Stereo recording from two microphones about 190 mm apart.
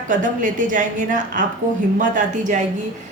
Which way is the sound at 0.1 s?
40° right (ahead or behind).